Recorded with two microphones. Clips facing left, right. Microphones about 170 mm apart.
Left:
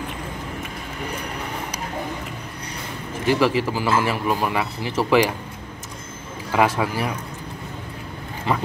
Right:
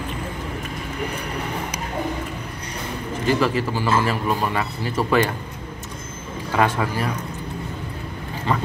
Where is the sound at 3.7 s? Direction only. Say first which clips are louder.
Even; 10° left (ahead or behind).